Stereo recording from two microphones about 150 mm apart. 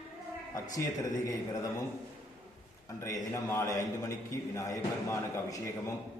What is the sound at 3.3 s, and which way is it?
A man's voice, 20° left (ahead or behind).